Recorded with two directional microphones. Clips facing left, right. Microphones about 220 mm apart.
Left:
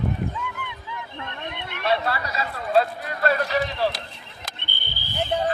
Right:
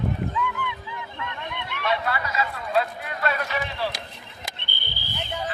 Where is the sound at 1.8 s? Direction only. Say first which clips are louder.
Left 2 dB; 35° left (ahead or behind).